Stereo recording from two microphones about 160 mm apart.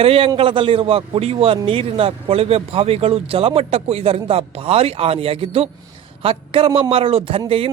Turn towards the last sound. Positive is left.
turn(degrees=-35)  # may be behind; listen again after turning